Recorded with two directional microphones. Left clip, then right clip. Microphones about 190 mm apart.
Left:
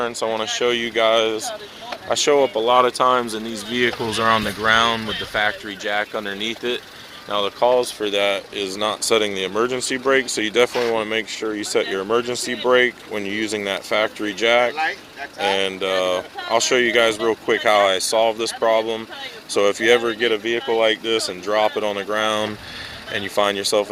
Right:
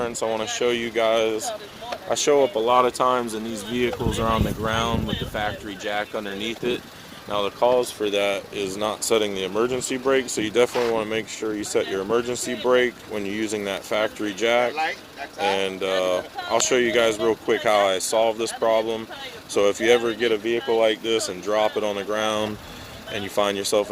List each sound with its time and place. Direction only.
0.0 s speech: centre (ahead or behind)
11.9 s speech: 5° left (ahead or behind)
12.2 s speech: 5° right (ahead or behind)